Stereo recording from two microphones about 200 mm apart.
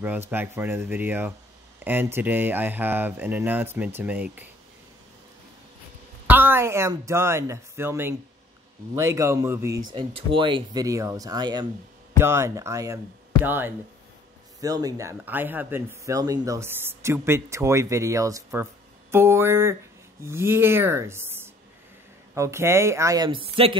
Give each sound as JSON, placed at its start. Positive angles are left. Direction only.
{"t": 0.0, "sound": "speech", "side_deg": -10}
{"t": 6.2, "sound": "speech", "side_deg": -10}
{"t": 9.9, "sound": "speech", "side_deg": -25}